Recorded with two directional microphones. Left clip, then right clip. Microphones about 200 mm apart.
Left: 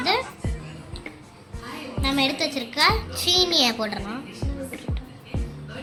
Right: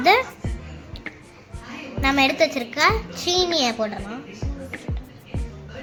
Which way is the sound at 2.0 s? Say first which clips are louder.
Right 5 dB; 45° right (ahead or behind).